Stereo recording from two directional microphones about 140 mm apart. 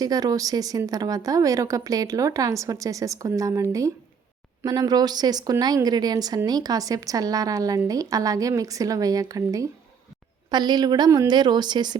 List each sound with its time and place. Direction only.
0.0 s a woman's voice: 25° right (ahead or behind)